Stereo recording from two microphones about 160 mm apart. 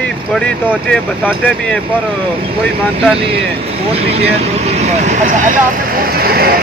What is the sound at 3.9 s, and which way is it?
Speech, 40° right (ahead or behind).